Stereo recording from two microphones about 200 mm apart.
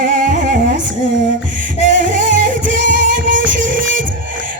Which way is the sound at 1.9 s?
40° right (ahead or behind).